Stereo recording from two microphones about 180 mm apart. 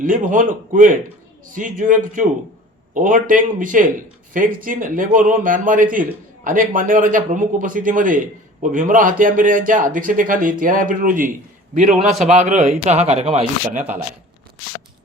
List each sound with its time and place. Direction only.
0.0 s speech: 50° right (ahead or behind)